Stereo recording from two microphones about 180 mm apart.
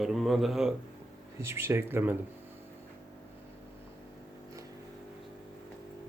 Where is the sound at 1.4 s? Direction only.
15° right (ahead or behind).